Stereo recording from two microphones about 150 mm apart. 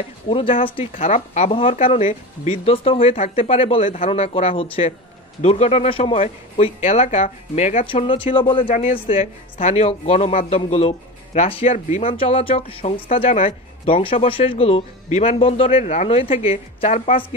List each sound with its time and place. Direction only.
0.3 s a man's voice: 40° left (ahead or behind)
7.8 s a man's voice: 35° left (ahead or behind)
8.6 s speech: 60° left (ahead or behind)
9.0 s a man's voice: 40° left (ahead or behind)